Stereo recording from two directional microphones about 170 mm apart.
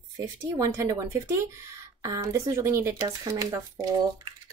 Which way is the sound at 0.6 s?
15° right (ahead or behind).